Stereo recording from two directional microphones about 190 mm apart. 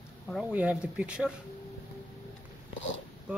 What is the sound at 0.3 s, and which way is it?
Speech, 5° right (ahead or behind).